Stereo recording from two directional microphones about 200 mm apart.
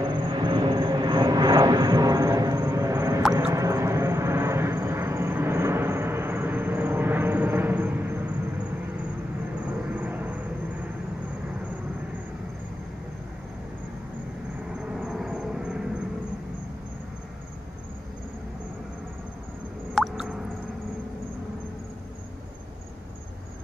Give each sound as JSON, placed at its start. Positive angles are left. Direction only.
{"t": 0.0, "sound": "vehicle", "side_deg": -20}
{"t": 9.9, "sound": "vehicle", "side_deg": -10}
{"t": 14.8, "sound": "vehicle", "side_deg": -5}
{"t": 19.9, "sound": "drip", "side_deg": 0}